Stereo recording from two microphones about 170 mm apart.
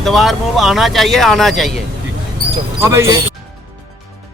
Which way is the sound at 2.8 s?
15° right (ahead or behind).